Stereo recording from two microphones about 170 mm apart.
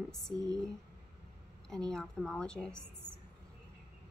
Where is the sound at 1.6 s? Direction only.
5° left (ahead or behind).